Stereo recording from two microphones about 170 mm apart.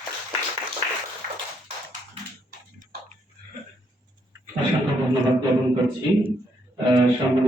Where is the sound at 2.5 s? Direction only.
55° right (ahead or behind).